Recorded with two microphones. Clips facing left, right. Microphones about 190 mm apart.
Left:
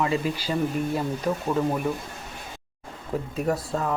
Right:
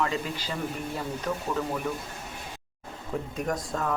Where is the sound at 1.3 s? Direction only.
25° left (ahead or behind).